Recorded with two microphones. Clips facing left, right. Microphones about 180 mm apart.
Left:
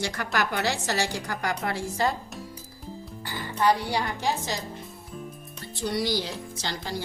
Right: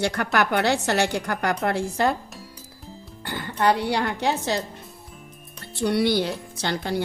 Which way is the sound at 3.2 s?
65° right (ahead or behind).